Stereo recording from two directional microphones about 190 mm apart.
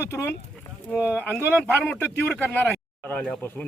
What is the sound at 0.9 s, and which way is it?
Speech, 5° right (ahead or behind).